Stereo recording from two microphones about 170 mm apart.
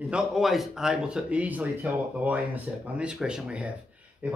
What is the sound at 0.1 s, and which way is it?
Speech, centre (ahead or behind).